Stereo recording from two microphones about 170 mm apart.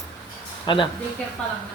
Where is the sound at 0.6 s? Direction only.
30° left (ahead or behind).